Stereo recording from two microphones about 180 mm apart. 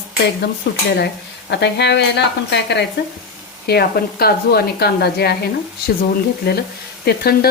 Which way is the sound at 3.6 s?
60° left (ahead or behind).